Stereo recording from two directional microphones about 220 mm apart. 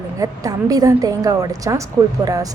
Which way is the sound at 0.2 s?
15° right (ahead or behind).